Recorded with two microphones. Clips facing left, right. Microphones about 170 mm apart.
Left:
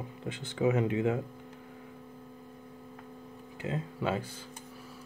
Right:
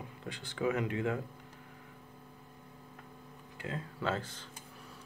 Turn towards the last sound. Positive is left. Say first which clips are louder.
# left 3 dB
turn(degrees=15)  # may be behind; listen again after turning